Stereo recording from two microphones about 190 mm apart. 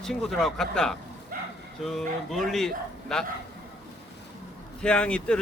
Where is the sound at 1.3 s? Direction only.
45° right (ahead or behind).